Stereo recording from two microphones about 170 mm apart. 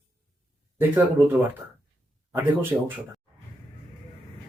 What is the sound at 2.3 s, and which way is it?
Speech, 10° right (ahead or behind).